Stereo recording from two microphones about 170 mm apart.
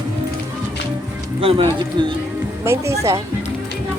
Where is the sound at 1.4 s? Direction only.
30° right (ahead or behind).